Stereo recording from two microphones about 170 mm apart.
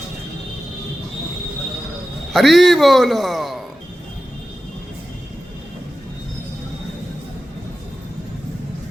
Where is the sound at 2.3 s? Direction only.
Centre (ahead or behind).